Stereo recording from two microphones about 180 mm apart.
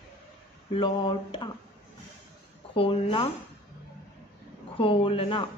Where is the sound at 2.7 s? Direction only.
30° left (ahead or behind).